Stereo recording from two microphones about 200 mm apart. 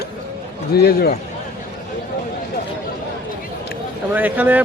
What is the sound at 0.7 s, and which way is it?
Speech, 50° left (ahead or behind).